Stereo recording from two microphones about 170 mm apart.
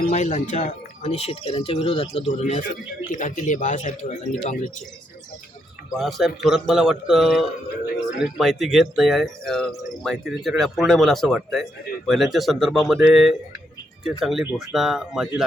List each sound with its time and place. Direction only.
0.1 s speech: 45° left (ahead or behind)
5.9 s speech: centre (ahead or behind)